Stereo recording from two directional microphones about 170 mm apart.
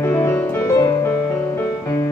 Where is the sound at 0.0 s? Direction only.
15° left (ahead or behind).